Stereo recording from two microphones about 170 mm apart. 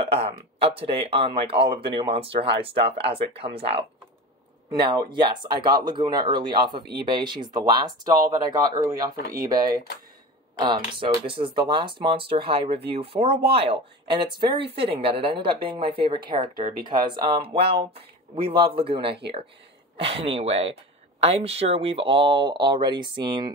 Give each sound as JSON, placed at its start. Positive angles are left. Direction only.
{"t": 0.0, "sound": "speech", "side_deg": -35}
{"t": 6.8, "sound": "speech", "side_deg": -70}
{"t": 7.2, "sound": "speech", "side_deg": -25}
{"t": 11.0, "sound": "speech", "side_deg": -30}
{"t": 17.6, "sound": "speech", "side_deg": -75}
{"t": 18.8, "sound": "speech", "side_deg": -30}